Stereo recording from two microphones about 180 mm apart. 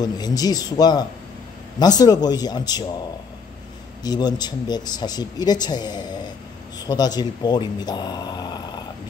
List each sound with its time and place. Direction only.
0.0 s speech: 20° left (ahead or behind)
4.0 s speech: 20° left (ahead or behind)